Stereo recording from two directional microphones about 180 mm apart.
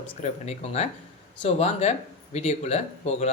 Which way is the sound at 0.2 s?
35° left (ahead or behind).